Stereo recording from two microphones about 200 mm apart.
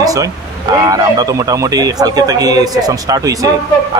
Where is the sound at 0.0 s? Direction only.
15° right (ahead or behind).